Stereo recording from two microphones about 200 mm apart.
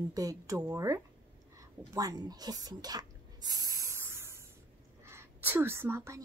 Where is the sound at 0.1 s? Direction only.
15° right (ahead or behind).